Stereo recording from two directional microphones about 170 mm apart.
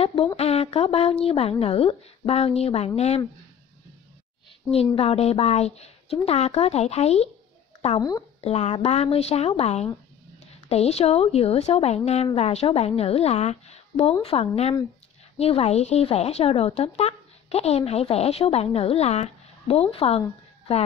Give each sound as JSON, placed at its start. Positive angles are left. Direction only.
{"t": 0.0, "sound": "a sound", "side_deg": 35}
{"t": 0.4, "sound": "speech", "side_deg": 35}
{"t": 4.9, "sound": "speech", "side_deg": 35}